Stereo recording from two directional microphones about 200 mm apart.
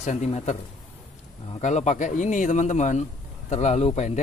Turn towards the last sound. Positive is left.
turn(degrees=35)  # may be behind; listen again after turning